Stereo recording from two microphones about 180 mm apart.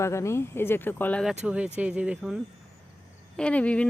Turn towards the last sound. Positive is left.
turn(degrees=5)  # may be behind; listen again after turning